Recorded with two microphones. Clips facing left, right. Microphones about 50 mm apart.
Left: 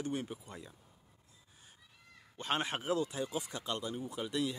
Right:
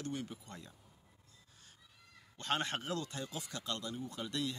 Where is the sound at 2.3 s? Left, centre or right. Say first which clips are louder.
Left 1 dB; centre.